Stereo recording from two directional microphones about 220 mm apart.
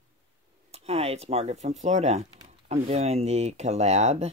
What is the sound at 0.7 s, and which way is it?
Speech, 30° right (ahead or behind).